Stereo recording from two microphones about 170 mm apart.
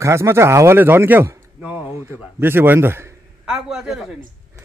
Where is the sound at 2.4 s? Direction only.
10° right (ahead or behind).